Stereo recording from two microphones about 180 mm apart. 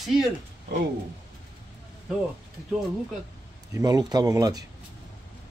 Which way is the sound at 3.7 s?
20° right (ahead or behind).